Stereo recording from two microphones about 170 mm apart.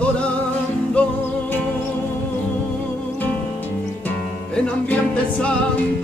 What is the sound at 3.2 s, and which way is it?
Music, 10° left (ahead or behind).